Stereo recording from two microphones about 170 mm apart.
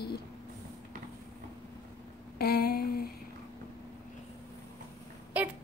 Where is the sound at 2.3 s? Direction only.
65° left (ahead or behind).